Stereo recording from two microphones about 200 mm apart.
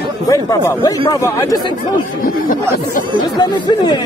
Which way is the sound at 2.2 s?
45° left (ahead or behind).